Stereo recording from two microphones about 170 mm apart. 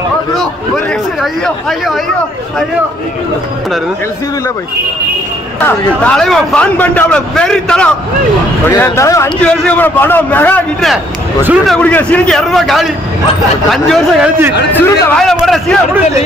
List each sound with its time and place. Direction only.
1.2 s a man's voice: centre (ahead or behind)
5.6 s a man's voice: 10° left (ahead or behind)
11.4 s a man's voice: 5° right (ahead or behind)
14.7 s a man's voice: 10° left (ahead or behind)